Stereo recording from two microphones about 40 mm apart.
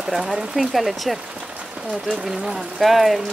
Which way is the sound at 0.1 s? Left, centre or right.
Centre.